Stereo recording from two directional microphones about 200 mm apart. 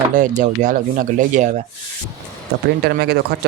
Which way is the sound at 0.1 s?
40° right (ahead or behind).